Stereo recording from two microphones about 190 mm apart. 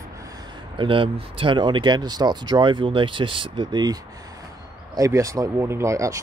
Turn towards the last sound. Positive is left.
turn(degrees=-15)  # may be behind; listen again after turning